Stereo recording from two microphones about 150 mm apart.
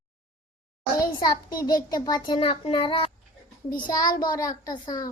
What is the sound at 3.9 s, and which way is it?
Speech, 70° left (ahead or behind).